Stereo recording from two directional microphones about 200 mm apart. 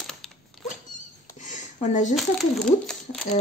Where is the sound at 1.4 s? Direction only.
40° left (ahead or behind).